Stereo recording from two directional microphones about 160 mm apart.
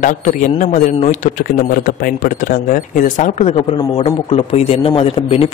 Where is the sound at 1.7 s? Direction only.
60° left (ahead or behind); by 5.5 s 40° left (ahead or behind).